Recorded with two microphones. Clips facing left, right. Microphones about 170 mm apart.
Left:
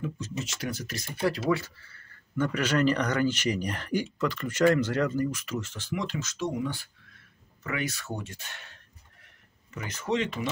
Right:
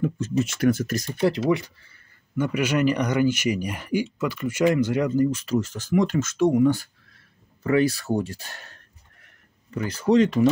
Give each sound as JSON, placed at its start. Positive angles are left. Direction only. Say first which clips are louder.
{"t": 0.4, "sound": "speech", "louder": "right 14 dB", "side_deg": -55}
{"t": 1.2, "sound": "speech", "louder": "right 5 dB", "side_deg": -20}
{"t": 7.6, "sound": "speech", "louder": "right 12 dB", "side_deg": -35}